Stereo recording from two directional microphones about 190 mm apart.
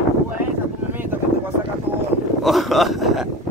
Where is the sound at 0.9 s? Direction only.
10° right (ahead or behind).